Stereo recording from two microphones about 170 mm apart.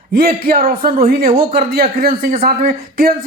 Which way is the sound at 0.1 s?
65° right (ahead or behind).